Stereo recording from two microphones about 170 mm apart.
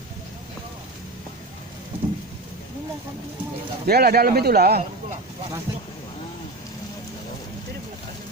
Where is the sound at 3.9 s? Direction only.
65° right (ahead or behind).